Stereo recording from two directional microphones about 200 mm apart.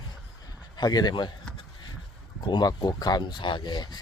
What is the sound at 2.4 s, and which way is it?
Speech, 20° left (ahead or behind).